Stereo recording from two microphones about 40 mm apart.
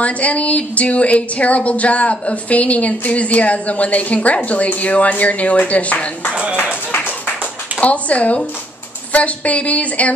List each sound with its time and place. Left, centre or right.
0.0 s speech: left
6.6 s music: left
7.8 s a sound: left
9.1 s speech: left